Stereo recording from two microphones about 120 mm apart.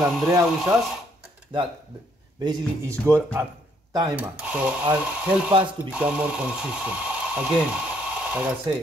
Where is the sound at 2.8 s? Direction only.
20° right (ahead or behind).